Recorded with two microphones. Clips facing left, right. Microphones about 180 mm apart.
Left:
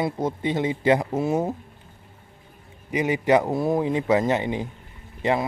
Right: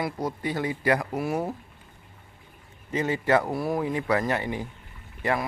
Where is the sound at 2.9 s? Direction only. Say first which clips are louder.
Left 4 dB; 15° left (ahead or behind).